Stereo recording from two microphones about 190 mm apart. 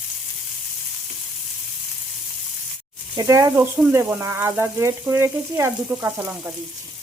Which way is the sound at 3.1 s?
20° right (ahead or behind).